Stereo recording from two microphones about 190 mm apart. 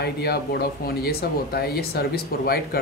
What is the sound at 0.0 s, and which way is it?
Speech, 55° left (ahead or behind).